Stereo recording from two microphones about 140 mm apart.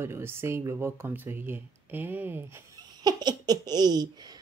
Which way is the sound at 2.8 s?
30° right (ahead or behind).